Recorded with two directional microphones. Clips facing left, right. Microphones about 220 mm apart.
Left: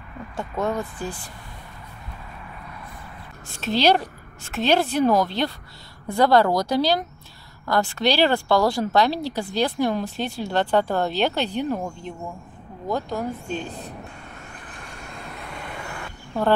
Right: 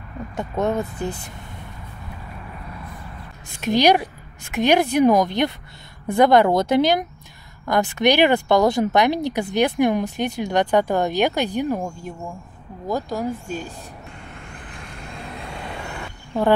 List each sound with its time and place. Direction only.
0.4 s speech: 20° right (ahead or behind)
3.4 s speech: 15° right (ahead or behind)